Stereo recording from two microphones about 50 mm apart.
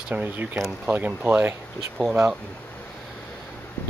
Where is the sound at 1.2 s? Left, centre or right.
Right.